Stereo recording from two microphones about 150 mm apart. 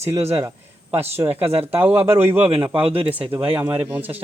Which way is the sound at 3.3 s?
35° right (ahead or behind).